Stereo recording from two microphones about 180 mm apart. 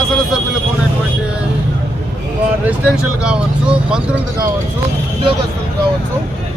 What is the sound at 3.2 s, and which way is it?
Speech, 5° right (ahead or behind).